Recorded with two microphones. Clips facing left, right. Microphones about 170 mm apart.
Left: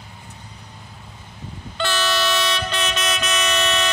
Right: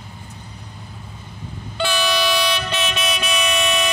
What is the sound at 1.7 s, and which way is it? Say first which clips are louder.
Train: right 2 dB; 5° right (ahead or behind).